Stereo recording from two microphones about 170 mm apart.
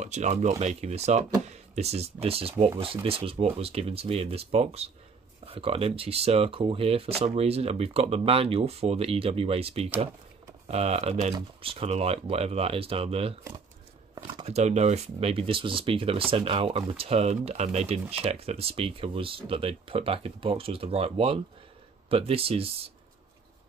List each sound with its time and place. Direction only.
0.0 s speech: 45° right (ahead or behind)